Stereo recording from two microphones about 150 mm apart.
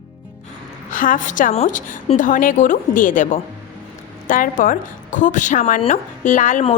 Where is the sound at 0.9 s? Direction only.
60° left (ahead or behind).